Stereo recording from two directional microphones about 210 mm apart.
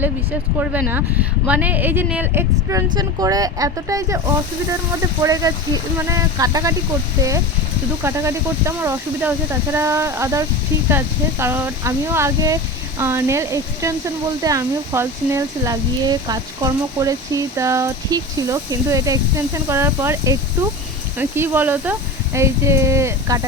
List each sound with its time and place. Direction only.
0.6 s speech: 5° right (ahead or behind)
5.2 s speech: 15° right (ahead or behind)
8.0 s speech: 15° right (ahead or behind)